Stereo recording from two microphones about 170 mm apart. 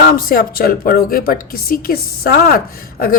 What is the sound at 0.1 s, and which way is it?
A woman's voice, 60° left (ahead or behind).